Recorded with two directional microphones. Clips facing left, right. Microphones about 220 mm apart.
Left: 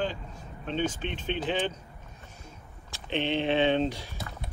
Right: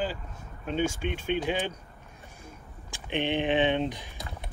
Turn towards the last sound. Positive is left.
turn(degrees=-15)  # may be behind; listen again after turning